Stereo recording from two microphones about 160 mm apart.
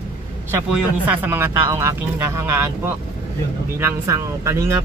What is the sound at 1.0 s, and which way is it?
Speech, 10° right (ahead or behind).